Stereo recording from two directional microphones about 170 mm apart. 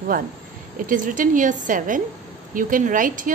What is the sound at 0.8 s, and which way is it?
A woman's voice, 50° right (ahead or behind).